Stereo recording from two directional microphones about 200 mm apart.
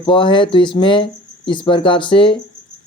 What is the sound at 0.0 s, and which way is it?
Speech, 25° left (ahead or behind).